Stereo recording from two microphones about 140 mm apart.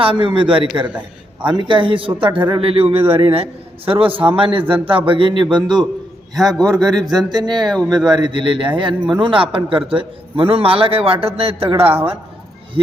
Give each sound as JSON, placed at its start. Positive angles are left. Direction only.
{"t": 0.0, "sound": "speech", "side_deg": -40}
{"t": 0.9, "sound": "a man's voice", "side_deg": -10}
{"t": 1.5, "sound": "speech", "side_deg": -35}